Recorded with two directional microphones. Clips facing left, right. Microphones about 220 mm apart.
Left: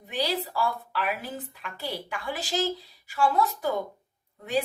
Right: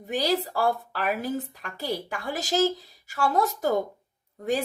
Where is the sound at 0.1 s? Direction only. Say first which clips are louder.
Right 4 dB; 45° right (ahead or behind).